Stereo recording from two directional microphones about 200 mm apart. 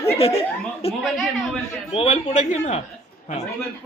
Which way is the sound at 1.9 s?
30° left (ahead or behind).